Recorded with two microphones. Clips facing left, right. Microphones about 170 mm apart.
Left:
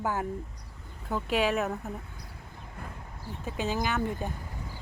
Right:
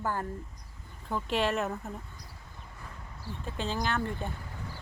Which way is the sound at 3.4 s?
5° left (ahead or behind).